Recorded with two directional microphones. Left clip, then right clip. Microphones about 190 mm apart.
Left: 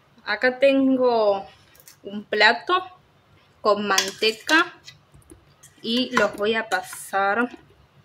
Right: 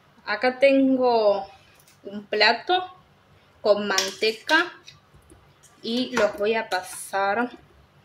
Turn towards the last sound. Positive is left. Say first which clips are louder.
# left 2 dB
turn(degrees=20)  # may be behind; listen again after turning